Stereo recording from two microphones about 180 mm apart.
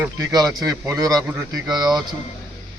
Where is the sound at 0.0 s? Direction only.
20° right (ahead or behind).